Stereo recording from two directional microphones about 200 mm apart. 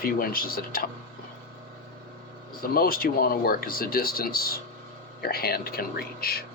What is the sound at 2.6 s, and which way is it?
Speech, 45° left (ahead or behind).